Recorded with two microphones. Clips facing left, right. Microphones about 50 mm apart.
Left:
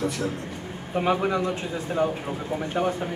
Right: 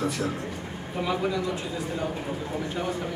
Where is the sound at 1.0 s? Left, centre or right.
Left.